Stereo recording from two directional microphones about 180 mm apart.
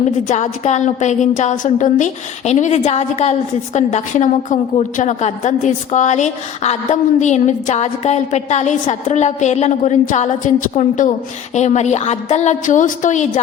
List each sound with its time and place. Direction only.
0.3 s a woman's voice: 40° left (ahead or behind)